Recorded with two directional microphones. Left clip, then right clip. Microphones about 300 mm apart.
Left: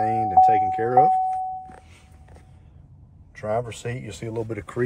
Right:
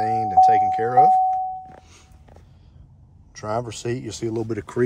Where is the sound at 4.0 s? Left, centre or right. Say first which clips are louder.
Right 4 dB; centre.